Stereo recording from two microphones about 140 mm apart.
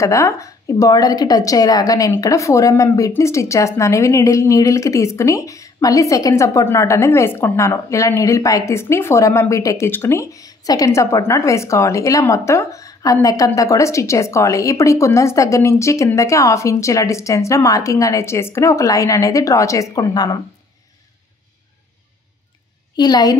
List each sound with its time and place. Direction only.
0.0 s a woman's voice: 20° left (ahead or behind)
22.9 s a woman's voice: 30° left (ahead or behind)